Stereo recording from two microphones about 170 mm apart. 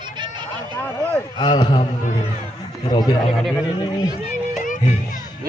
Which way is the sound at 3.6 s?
25° left (ahead or behind).